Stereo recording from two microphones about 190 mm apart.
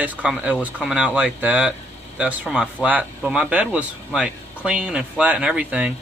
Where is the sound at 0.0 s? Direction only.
5° right (ahead or behind).